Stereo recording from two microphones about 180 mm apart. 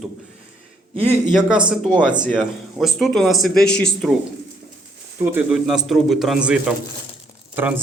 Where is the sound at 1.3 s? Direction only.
5° right (ahead or behind).